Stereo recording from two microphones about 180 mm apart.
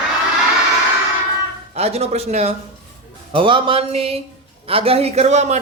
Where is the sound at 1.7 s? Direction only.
35° right (ahead or behind).